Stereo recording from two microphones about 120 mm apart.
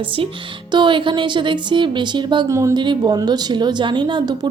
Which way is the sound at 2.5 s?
25° right (ahead or behind).